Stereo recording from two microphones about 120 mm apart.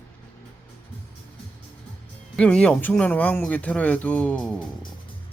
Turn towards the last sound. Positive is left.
turn(degrees=5)  # may be behind; listen again after turning